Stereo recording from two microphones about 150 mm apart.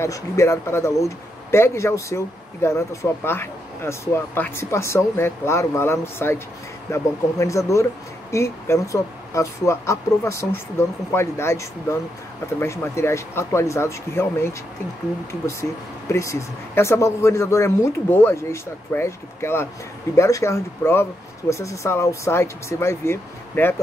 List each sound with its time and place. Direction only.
0.0 s speech: 20° left (ahead or behind)
16.1 s speech: 20° left (ahead or behind)